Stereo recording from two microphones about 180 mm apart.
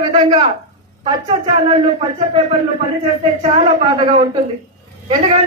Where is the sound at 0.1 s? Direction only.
25° right (ahead or behind).